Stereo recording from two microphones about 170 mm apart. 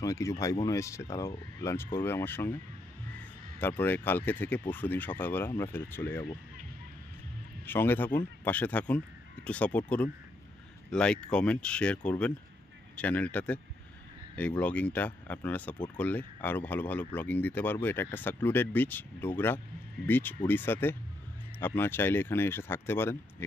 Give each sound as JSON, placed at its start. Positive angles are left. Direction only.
{"t": 0.0, "sound": "speech", "side_deg": 20}
{"t": 7.6, "sound": "speech", "side_deg": 10}